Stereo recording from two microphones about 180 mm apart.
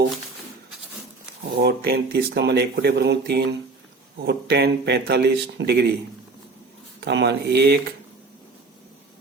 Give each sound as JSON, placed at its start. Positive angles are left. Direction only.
{"t": 1.5, "sound": "speech", "side_deg": -65}
{"t": 7.0, "sound": "speech", "side_deg": -70}